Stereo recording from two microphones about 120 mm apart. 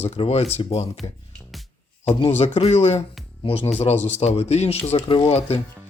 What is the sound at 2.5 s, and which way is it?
A man's voice, 60° left (ahead or behind).